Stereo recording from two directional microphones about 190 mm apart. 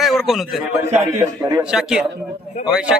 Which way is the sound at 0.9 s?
15° right (ahead or behind).